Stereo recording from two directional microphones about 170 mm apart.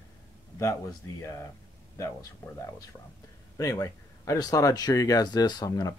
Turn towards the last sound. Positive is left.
turn(degrees=20)  # may be behind; listen again after turning